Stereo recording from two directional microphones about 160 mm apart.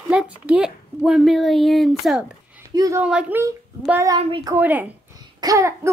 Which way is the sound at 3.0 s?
5° right (ahead or behind).